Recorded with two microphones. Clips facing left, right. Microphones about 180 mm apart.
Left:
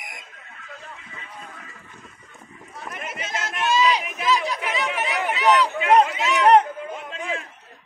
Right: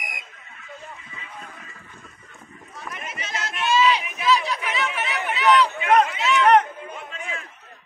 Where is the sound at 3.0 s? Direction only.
50° left (ahead or behind).